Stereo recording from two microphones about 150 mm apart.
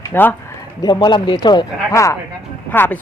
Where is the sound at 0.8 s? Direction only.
30° left (ahead or behind).